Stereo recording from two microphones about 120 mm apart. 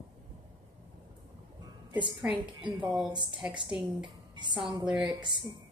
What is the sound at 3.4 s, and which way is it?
Speech, 10° right (ahead or behind).